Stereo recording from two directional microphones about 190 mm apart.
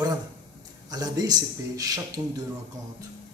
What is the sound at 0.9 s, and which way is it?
Speech, 20° right (ahead or behind).